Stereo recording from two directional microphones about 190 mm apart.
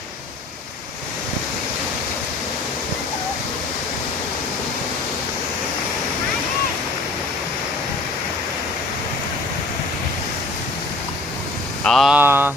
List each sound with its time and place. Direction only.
11.9 s vehicle: centre (ahead or behind)